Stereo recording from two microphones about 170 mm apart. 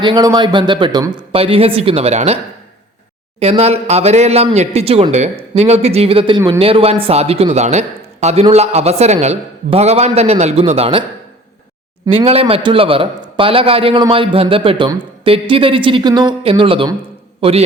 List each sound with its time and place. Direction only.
0.0 s speech: 25° right (ahead or behind)
3.4 s speech: 40° right (ahead or behind)
12.0 s speech: 35° right (ahead or behind)